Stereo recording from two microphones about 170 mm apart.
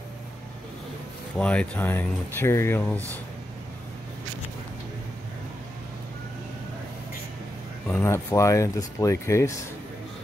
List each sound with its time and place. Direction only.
1.4 s speech: 5° left (ahead or behind)
7.9 s speech: 15° left (ahead or behind)